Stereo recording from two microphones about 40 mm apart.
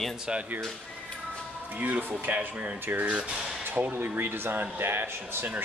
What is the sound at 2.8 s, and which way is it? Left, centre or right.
A man's voice, right.